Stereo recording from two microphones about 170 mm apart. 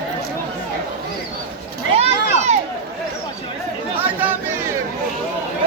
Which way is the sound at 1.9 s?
40° right (ahead or behind).